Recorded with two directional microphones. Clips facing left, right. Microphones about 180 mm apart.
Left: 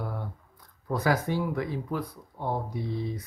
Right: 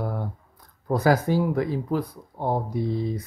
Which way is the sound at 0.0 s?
40° right (ahead or behind).